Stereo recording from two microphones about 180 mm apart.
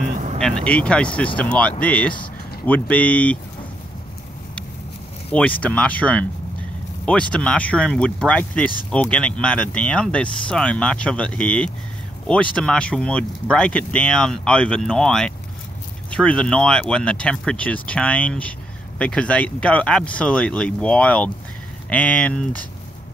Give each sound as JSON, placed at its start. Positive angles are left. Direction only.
{"t": 0.0, "sound": "vehicle", "side_deg": -40}
{"t": 0.4, "sound": "speech", "side_deg": 5}
{"t": 5.3, "sound": "speech", "side_deg": 5}